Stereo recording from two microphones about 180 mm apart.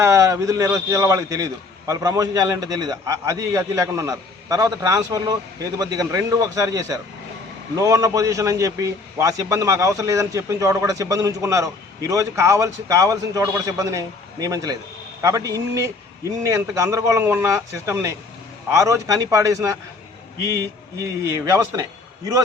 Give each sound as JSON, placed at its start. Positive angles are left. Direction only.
{"t": 0.0, "sound": "a man's voice", "side_deg": -15}
{"t": 21.0, "sound": "a man's voice", "side_deg": -15}